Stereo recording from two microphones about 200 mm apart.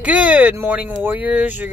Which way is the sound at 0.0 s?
5° right (ahead or behind).